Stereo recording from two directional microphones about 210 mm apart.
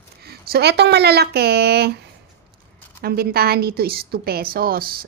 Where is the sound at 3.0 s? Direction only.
45° right (ahead or behind).